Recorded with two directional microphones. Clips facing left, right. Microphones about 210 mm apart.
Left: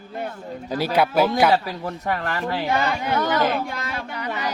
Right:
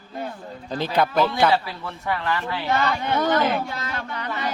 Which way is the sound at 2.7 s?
10° left (ahead or behind).